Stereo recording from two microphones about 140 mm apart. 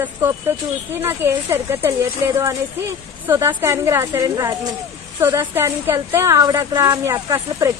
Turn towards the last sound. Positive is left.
turn(degrees=-25)  # may be behind; listen again after turning